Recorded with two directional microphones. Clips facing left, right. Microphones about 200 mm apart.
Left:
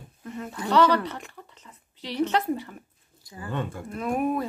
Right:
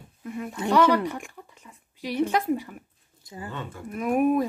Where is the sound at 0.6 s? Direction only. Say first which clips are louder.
Right 3 dB; 25° right (ahead or behind).